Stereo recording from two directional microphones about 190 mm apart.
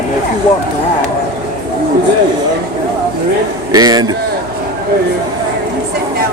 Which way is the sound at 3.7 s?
20° right (ahead or behind).